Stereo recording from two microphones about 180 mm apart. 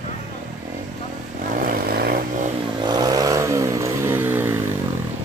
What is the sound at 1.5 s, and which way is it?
Vehicle, 50° right (ahead or behind).